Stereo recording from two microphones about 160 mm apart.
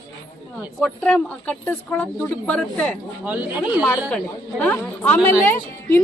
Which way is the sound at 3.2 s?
10° right (ahead or behind).